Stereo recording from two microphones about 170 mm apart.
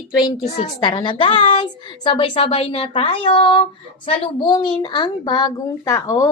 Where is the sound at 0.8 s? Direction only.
25° left (ahead or behind).